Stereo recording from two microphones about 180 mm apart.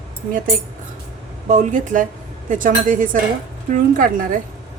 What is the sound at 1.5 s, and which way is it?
A woman's voice, 45° right (ahead or behind).